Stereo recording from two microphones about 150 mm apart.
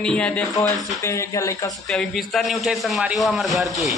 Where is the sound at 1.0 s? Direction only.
20° left (ahead or behind).